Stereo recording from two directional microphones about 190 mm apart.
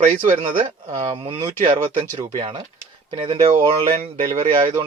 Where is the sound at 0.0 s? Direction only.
40° right (ahead or behind).